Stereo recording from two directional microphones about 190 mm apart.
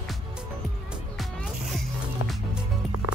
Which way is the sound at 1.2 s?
Centre (ahead or behind).